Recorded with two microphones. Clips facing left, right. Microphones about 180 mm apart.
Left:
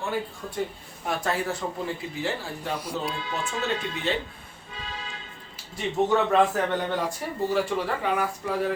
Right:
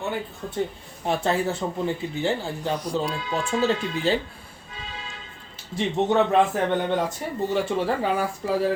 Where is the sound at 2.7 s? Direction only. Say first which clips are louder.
Right 4 dB; 5° left (ahead or behind).